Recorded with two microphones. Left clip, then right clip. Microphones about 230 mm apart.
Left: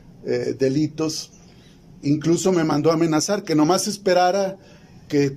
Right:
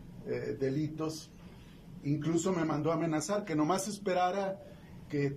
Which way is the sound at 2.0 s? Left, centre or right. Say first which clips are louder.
Left 13 dB; left.